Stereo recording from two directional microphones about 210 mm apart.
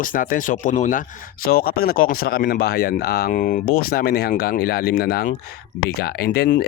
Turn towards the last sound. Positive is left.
turn(degrees=45)  # may be behind; listen again after turning